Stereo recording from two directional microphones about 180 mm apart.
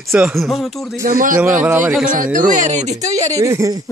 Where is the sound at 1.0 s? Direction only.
50° right (ahead or behind).